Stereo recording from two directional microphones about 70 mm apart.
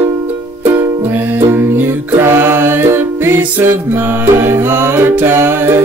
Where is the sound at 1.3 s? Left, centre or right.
Right.